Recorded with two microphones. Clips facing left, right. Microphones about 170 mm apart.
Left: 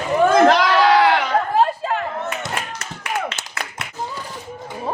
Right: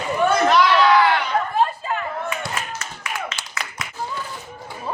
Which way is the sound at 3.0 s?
60° left (ahead or behind).